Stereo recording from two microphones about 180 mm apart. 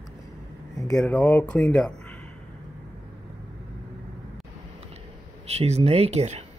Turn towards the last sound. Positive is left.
turn(degrees=-35)  # may be behind; listen again after turning